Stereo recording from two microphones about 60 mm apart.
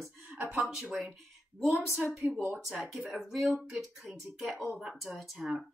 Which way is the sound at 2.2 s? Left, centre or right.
Right.